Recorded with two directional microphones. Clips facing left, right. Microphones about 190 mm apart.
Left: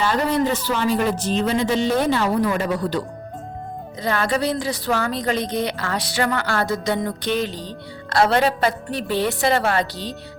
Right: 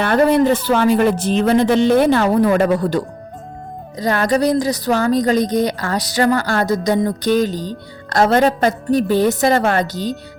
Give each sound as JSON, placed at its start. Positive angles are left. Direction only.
{"t": 0.0, "sound": "speech", "side_deg": -60}
{"t": 3.9, "sound": "speech", "side_deg": -40}